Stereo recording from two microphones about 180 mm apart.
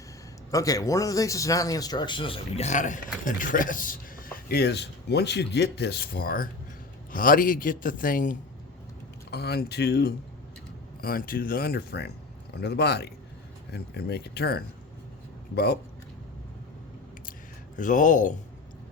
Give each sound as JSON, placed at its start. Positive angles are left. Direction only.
{"t": 0.5, "sound": "a man's voice", "side_deg": 20}
{"t": 9.3, "sound": "speech", "side_deg": 65}
{"t": 11.0, "sound": "a man's voice", "side_deg": 55}
{"t": 17.7, "sound": "a man's voice", "side_deg": 45}